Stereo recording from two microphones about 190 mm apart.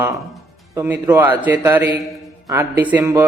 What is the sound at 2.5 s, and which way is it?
Speech, 10° right (ahead or behind).